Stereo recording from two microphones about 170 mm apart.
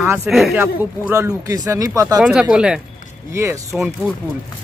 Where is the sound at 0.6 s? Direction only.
15° right (ahead or behind).